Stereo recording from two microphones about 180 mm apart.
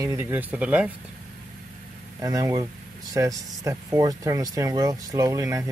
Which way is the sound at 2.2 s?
20° right (ahead or behind).